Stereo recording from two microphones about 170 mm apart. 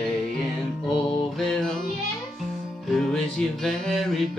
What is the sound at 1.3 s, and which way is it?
Music, 5° left (ahead or behind).